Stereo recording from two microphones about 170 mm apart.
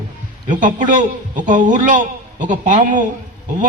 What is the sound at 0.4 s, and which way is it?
A man's voice, 50° right (ahead or behind).